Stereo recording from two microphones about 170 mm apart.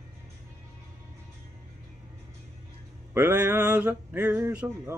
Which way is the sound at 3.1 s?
15° right (ahead or behind).